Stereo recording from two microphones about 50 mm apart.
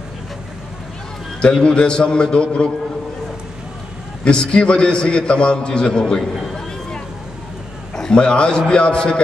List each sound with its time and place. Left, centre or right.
1.4 s a man's voice: centre
4.2 s a man's voice: centre
7.9 s a man's voice: centre